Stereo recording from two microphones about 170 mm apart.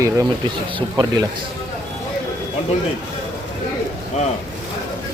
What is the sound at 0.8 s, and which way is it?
Speech, 25° right (ahead or behind).